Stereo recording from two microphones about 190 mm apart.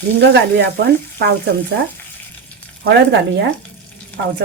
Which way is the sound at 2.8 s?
65° right (ahead or behind).